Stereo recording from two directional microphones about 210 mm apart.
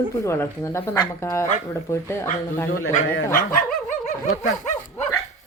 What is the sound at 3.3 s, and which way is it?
Dog, 40° left (ahead or behind).